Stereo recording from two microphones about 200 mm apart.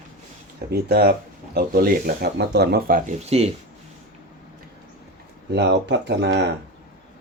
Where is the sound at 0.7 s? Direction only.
50° right (ahead or behind).